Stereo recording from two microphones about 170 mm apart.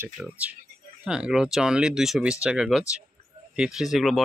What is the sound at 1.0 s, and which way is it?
Speech, 5° right (ahead or behind).